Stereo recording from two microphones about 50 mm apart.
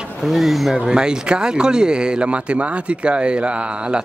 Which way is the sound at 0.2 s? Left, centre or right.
Centre.